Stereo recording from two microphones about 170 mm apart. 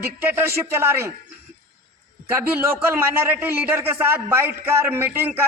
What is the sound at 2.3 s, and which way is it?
A man's voice, 15° right (ahead or behind).